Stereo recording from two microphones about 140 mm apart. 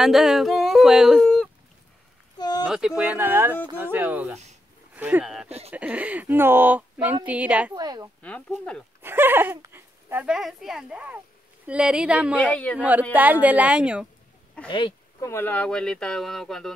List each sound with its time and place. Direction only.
0.0 s yodeling: 5° right (ahead or behind)
2.3 s a sound: 30° left (ahead or behind)
2.6 s speech: 5° right (ahead or behind)
5.2 s speech: 5° right (ahead or behind)
7.7 s a woman's voice: 30° right (ahead or behind)
8.2 s speech: 10° left (ahead or behind)
9.0 s speech: 15° right (ahead or behind)
10.2 s speech: 5° right (ahead or behind)
12.4 s speech: 10° left (ahead or behind)
12.7 s speech: 10° right (ahead or behind)
14.7 s speech: 35° left (ahead or behind)
15.1 s speech: 20° left (ahead or behind)